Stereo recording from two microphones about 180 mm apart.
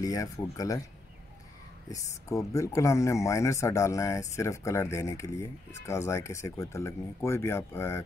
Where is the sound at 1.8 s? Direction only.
20° left (ahead or behind).